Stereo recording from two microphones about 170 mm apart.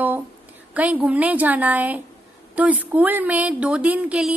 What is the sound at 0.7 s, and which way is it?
A woman's voice, 10° right (ahead or behind).